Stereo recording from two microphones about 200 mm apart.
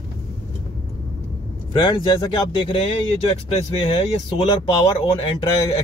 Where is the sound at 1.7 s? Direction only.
25° left (ahead or behind).